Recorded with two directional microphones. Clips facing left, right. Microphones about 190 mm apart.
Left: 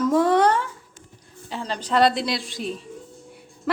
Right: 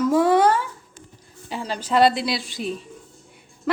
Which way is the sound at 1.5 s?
10° right (ahead or behind).